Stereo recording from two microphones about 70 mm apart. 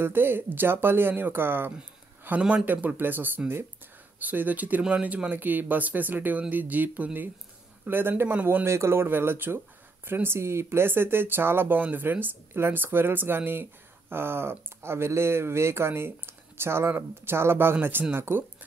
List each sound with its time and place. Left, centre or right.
0.0 s speech: right
8.6 s speech: right